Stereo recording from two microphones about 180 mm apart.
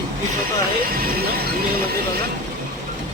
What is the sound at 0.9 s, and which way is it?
Speech, 55° right (ahead or behind).